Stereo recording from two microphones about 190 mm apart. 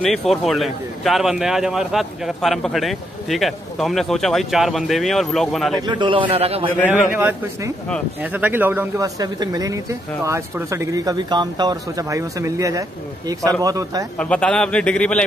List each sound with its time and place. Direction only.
0.0 s a man's voice: centre (ahead or behind)
5.8 s a man's voice: 25° right (ahead or behind)
7.1 s a man's voice: 10° right (ahead or behind)
14.1 s a man's voice: 5° left (ahead or behind)